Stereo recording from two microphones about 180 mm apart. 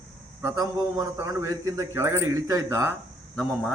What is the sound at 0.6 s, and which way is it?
A man's voice, 20° right (ahead or behind).